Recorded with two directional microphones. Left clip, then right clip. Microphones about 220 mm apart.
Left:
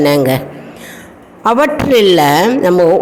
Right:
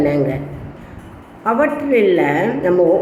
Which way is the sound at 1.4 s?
45° left (ahead or behind).